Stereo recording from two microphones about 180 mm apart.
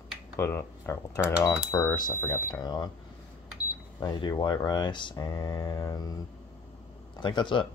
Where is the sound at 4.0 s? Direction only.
20° left (ahead or behind).